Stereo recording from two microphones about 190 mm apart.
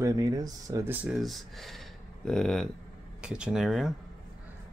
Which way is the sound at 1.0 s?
Centre (ahead or behind).